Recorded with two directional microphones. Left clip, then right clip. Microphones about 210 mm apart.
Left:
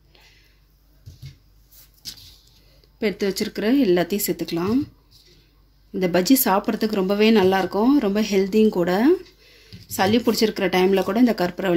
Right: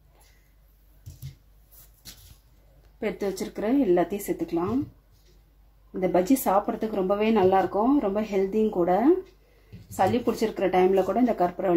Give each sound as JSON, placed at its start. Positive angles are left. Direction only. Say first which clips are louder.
{"t": 3.2, "sound": "speech", "louder": "left 5 dB", "side_deg": 45}
{"t": 5.9, "sound": "speech", "louder": "left 4 dB", "side_deg": 55}